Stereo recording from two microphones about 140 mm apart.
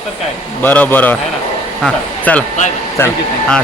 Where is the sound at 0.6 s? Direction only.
15° left (ahead or behind).